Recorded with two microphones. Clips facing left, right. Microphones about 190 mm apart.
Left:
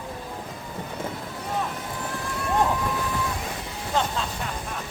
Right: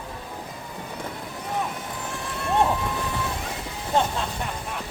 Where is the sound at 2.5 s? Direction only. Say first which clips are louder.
Right 2 dB; 25° right (ahead or behind).